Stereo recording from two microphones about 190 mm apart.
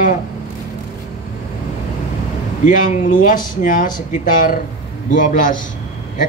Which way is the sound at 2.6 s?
40° left (ahead or behind).